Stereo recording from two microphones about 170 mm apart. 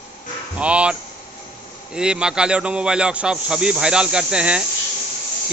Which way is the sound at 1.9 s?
5° right (ahead or behind).